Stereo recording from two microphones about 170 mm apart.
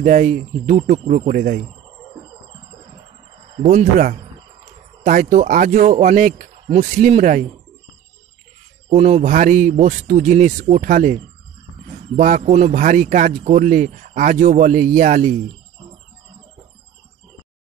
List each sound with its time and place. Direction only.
0.0 s a man's voice: 45° right (ahead or behind)
3.5 s a man's voice: 45° right (ahead or behind)
8.8 s a man's voice: 40° right (ahead or behind)